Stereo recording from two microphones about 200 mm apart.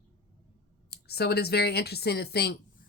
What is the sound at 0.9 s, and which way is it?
Speech, 55° left (ahead or behind).